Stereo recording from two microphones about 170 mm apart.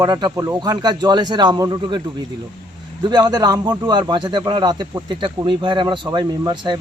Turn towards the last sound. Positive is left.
turn(degrees=-25)  # may be behind; listen again after turning